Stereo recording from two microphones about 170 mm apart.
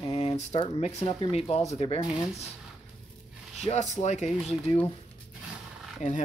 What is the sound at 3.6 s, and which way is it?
Speech, 40° left (ahead or behind).